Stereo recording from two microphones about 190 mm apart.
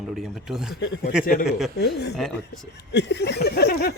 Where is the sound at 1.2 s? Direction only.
50° left (ahead or behind).